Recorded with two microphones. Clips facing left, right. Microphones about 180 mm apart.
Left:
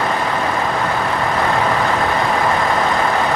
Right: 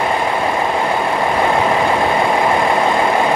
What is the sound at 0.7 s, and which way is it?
Vehicle, 20° right (ahead or behind).